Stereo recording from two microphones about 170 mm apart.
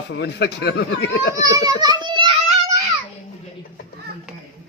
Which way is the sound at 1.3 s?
20° right (ahead or behind).